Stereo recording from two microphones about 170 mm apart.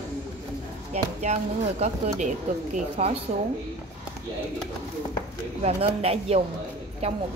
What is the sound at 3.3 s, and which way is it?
Speech, 45° right (ahead or behind).